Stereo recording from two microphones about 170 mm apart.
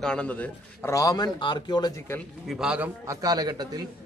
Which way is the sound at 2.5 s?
5° right (ahead or behind).